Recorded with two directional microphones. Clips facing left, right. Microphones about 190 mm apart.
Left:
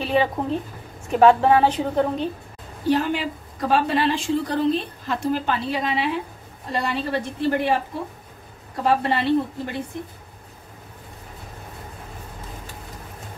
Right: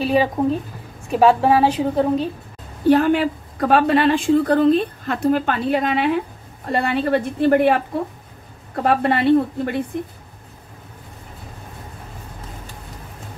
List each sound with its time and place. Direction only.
0.0 s a woman's voice: 10° right (ahead or behind)
2.9 s a woman's voice: 60° right (ahead or behind)
8.8 s a woman's voice: 55° right (ahead or behind)